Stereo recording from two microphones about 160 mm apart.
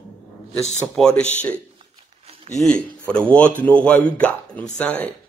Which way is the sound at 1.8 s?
35° right (ahead or behind).